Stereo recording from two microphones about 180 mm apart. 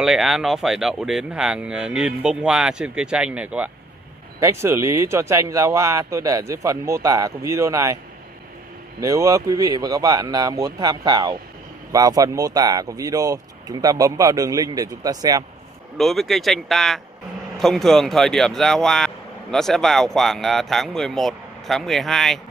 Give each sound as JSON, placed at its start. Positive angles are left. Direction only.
{"t": 0.0, "sound": "speech", "side_deg": 0}
{"t": 9.0, "sound": "speech", "side_deg": -20}
{"t": 16.0, "sound": "speech", "side_deg": 0}